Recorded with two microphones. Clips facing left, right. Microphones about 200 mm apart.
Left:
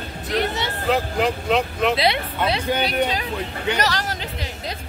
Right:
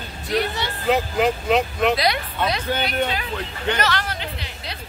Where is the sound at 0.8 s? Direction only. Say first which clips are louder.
Right 2 dB; centre (ahead or behind).